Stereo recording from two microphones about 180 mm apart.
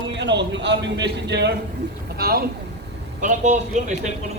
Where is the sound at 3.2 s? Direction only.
40° right (ahead or behind).